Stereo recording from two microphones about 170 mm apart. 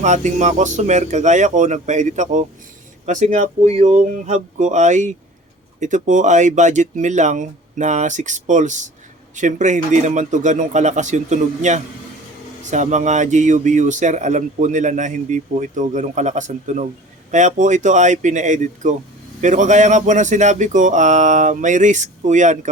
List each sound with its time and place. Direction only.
0.0 s speech: 45° right (ahead or behind)